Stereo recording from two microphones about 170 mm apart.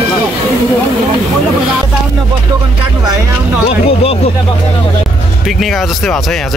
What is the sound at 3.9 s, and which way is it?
Speech, 35° left (ahead or behind).